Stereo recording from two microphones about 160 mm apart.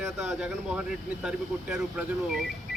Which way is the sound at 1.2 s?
5° right (ahead or behind).